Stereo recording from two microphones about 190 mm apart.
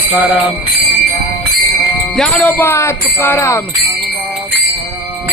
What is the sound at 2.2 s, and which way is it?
Speech, 5° left (ahead or behind).